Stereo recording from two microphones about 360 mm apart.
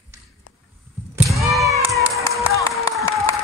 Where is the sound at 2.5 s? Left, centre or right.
Centre.